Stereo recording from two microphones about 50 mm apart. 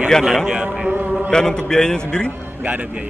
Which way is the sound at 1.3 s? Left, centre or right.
Centre.